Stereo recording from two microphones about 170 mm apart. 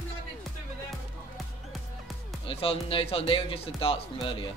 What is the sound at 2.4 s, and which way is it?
Speech, 35° left (ahead or behind).